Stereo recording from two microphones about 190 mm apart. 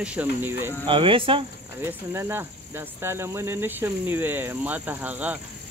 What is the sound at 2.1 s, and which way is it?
Speech, 10° right (ahead or behind).